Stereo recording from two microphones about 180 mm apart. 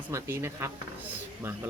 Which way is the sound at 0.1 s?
15° right (ahead or behind).